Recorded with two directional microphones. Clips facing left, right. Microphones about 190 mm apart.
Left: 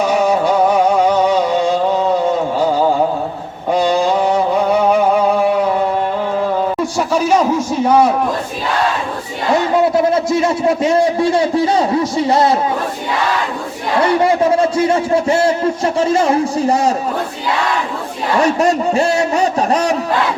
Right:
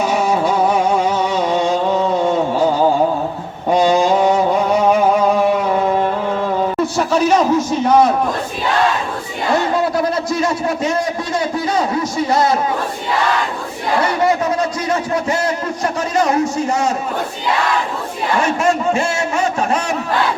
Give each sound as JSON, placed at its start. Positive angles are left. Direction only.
{"t": 6.9, "sound": "a man's voice", "side_deg": 10}
{"t": 10.0, "sound": "a man's voice", "side_deg": 25}
{"t": 14.3, "sound": "a man's voice", "side_deg": 30}
{"t": 18.6, "sound": "a man's voice", "side_deg": 35}